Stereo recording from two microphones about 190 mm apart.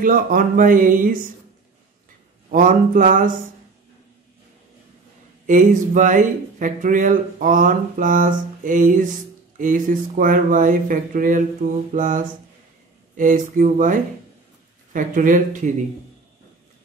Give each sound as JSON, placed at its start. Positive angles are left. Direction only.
{"t": 0.0, "sound": "speech", "side_deg": -50}
{"t": 2.5, "sound": "speech", "side_deg": -45}
{"t": 5.5, "sound": "speech", "side_deg": -45}